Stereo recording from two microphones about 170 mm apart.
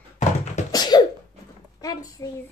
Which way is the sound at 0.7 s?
25° left (ahead or behind).